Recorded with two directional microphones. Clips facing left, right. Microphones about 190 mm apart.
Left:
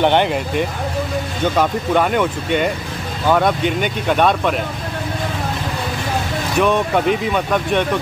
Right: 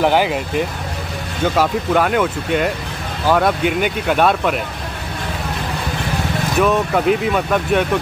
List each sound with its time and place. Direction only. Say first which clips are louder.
0.0 s speech: even; 5° right (ahead or behind)
6.6 s speech: even; centre (ahead or behind)